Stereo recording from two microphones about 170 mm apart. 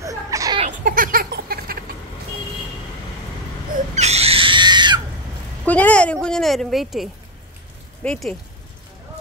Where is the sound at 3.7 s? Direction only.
40° right (ahead or behind).